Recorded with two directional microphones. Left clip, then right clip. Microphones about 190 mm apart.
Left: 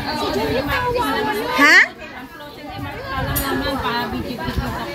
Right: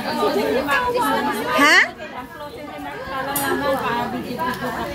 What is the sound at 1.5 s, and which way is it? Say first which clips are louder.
Children playing: left 2 dB; 10° right (ahead or behind).